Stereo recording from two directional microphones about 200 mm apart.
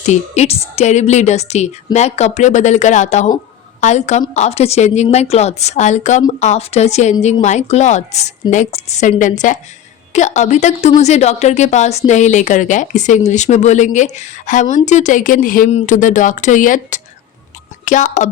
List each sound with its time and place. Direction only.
0.0 s a woman's voice: 35° left (ahead or behind)